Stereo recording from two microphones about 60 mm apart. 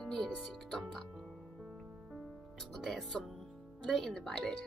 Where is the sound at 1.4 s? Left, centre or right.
Centre.